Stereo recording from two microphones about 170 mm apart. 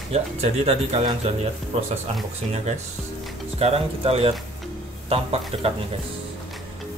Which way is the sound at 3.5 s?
35° right (ahead or behind).